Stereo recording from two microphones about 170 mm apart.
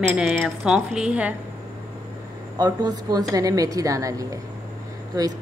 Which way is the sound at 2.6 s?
20° right (ahead or behind).